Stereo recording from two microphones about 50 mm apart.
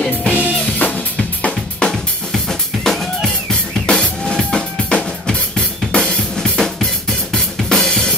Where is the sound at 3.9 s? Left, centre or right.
Centre.